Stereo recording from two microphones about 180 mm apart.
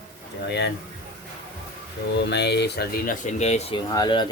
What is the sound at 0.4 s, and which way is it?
Speech, 70° left (ahead or behind).